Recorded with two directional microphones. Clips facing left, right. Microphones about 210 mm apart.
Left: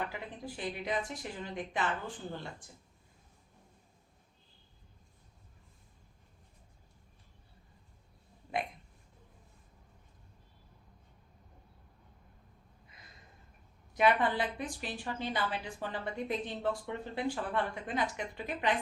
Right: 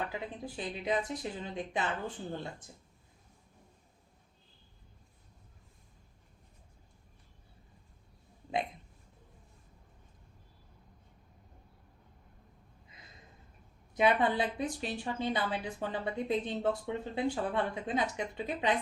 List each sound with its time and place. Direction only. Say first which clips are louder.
0.1 s a woman's voice: right 3 dB; 20° right (ahead or behind)
13.9 s a woman's voice: right 1 dB; 20° right (ahead or behind)